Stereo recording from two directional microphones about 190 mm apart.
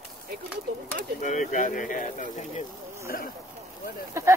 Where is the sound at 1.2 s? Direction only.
40° left (ahead or behind).